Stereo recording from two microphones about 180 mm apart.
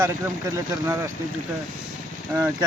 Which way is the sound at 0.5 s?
15° right (ahead or behind).